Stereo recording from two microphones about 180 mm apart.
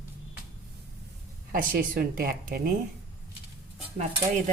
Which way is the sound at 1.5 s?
50° right (ahead or behind).